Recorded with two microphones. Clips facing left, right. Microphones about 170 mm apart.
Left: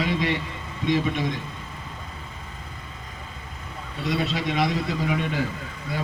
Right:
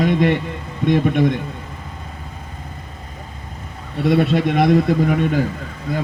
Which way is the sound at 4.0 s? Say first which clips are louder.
Right 10 dB; 55° right (ahead or behind).